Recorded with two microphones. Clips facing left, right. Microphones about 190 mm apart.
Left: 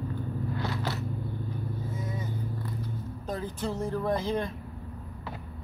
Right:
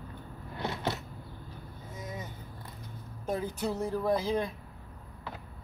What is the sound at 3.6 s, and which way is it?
Music, 10° right (ahead or behind).